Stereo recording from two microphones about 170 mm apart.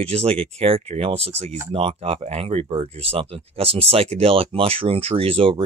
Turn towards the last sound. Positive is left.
turn(degrees=-35)  # may be behind; listen again after turning